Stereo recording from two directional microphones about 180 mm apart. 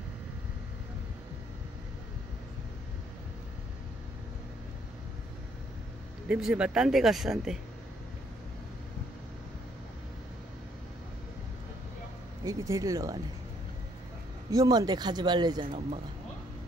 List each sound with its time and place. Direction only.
6.2 s speech: 5° right (ahead or behind)
12.4 s speech: 20° right (ahead or behind)
14.5 s speech: 20° right (ahead or behind)